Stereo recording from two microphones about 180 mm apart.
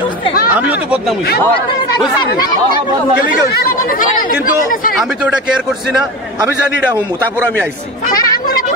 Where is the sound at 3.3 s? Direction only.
50° left (ahead or behind).